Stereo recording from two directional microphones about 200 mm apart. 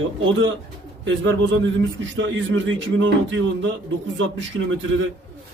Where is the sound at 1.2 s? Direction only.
65° right (ahead or behind).